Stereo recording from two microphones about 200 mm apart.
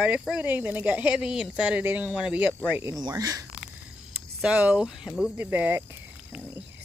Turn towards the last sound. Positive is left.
turn(degrees=-10)  # may be behind; listen again after turning